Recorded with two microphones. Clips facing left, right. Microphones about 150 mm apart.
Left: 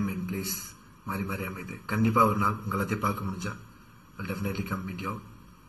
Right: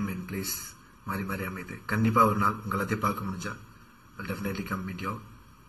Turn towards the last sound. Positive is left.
turn(degrees=15)  # may be behind; listen again after turning